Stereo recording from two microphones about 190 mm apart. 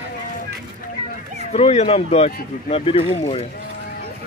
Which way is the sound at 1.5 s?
35° left (ahead or behind).